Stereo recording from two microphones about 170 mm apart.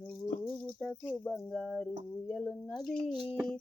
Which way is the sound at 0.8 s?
5° left (ahead or behind).